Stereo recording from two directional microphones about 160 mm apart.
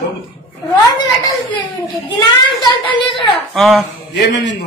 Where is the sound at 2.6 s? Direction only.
30° left (ahead or behind).